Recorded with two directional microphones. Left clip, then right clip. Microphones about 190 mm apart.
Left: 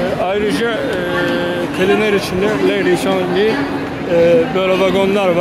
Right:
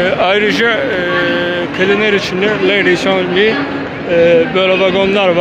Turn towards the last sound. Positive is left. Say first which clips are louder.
# right 2 dB
turn(degrees=10)  # may be behind; listen again after turning